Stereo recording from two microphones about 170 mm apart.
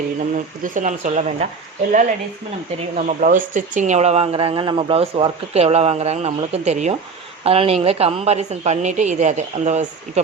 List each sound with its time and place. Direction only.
0.6 s speech: 50° right (ahead or behind)